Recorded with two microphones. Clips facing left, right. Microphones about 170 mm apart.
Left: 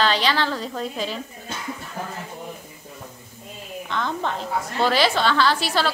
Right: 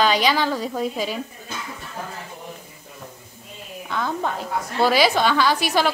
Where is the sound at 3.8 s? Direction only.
5° right (ahead or behind).